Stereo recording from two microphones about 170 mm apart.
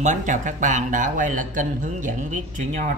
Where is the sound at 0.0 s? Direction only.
45° right (ahead or behind).